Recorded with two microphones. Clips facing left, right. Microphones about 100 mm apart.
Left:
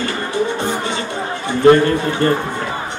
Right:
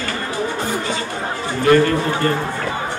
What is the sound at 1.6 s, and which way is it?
Speech, 30° left (ahead or behind).